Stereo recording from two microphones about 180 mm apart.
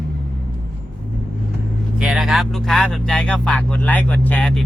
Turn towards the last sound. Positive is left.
turn(degrees=5)  # may be behind; listen again after turning